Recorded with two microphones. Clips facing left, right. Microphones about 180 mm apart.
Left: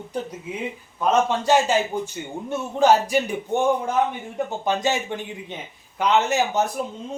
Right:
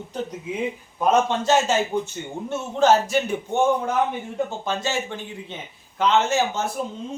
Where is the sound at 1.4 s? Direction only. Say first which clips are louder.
Left 1 dB; 10° left (ahead or behind).